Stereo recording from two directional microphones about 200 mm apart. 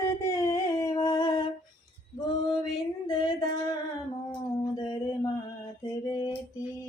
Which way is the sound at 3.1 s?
20° left (ahead or behind).